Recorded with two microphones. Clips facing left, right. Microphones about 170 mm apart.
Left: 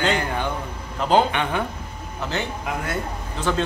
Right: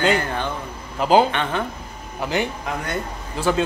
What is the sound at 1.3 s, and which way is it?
Speech, 10° left (ahead or behind).